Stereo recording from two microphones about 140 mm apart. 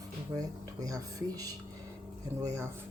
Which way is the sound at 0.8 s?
25° right (ahead or behind).